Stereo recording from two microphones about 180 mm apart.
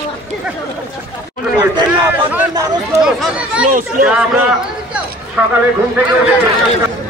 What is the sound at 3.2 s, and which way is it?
Speech, 5° right (ahead or behind).